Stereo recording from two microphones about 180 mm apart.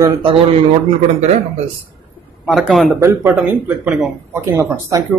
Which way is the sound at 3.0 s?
15° right (ahead or behind).